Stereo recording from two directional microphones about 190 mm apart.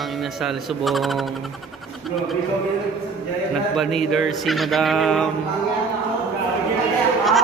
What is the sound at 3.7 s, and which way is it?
Speech, centre (ahead or behind).